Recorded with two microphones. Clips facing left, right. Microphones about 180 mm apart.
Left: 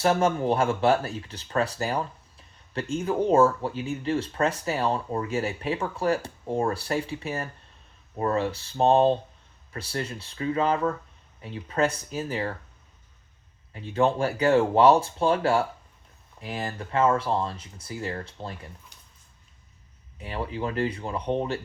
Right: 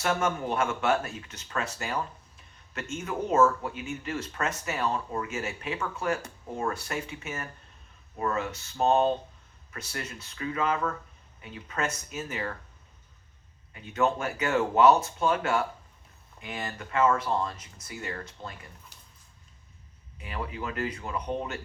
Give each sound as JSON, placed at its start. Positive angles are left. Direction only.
{"t": 0.0, "sound": "speech", "side_deg": 35}
{"t": 13.7, "sound": "speech", "side_deg": 30}
{"t": 20.2, "sound": "speech", "side_deg": 30}